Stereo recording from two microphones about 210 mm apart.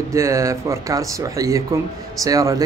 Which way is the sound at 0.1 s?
15° right (ahead or behind).